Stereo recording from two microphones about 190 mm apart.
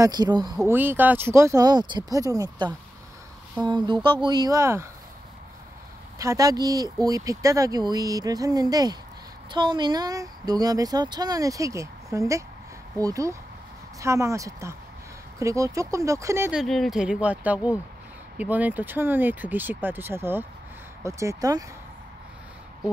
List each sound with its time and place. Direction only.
0.0 s speech: 20° right (ahead or behind)
0.7 s speech: 10° right (ahead or behind)
6.1 s speech: 15° right (ahead or behind)
16.6 s speech: centre (ahead or behind); by 21.6 s 20° right (ahead or behind)